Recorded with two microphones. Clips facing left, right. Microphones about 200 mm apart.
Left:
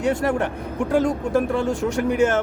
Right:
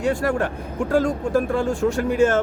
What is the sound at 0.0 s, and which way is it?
Speech, 20° left (ahead or behind).